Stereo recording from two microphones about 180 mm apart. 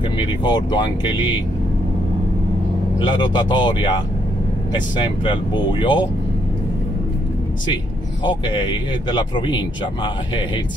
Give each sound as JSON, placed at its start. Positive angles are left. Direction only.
{"t": 0.2, "sound": "speech", "side_deg": 25}
{"t": 3.0, "sound": "speech", "side_deg": 25}
{"t": 8.3, "sound": "speech", "side_deg": 25}